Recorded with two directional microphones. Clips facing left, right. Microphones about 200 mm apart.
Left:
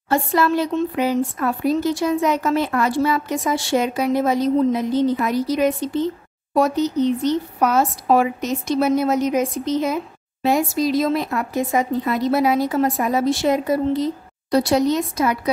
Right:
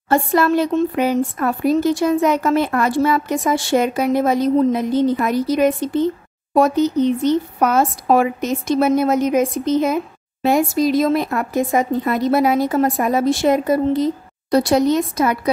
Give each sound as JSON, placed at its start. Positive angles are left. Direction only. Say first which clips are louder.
{"t": 0.1, "sound": "speech", "louder": "right 3 dB", "side_deg": -50}